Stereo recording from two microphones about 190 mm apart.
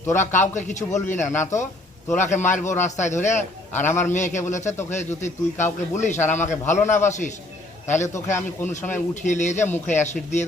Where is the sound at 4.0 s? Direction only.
40° left (ahead or behind).